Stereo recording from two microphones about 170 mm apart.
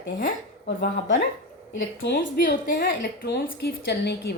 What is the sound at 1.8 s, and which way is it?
Speech, 90° left.